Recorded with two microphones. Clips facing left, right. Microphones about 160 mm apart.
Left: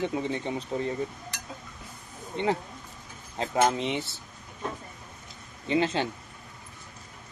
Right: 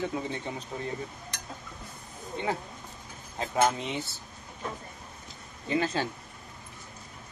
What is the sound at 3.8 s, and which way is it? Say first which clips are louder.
Speech: left 4 dB; 25° left (ahead or behind).